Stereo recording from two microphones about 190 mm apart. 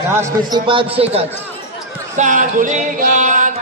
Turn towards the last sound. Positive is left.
turn(degrees=-40)  # may be behind; listen again after turning